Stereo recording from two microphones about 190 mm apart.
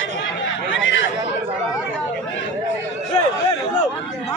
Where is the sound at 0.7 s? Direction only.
85° left.